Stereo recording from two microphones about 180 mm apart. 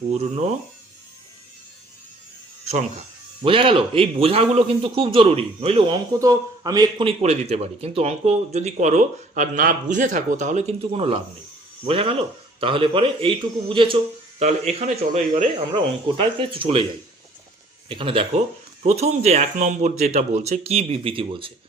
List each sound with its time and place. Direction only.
0.1 s speech: 40° right (ahead or behind)
3.4 s speech: 30° right (ahead or behind)
15.7 s speech: 30° right (ahead or behind)
17.8 s speech: 30° right (ahead or behind)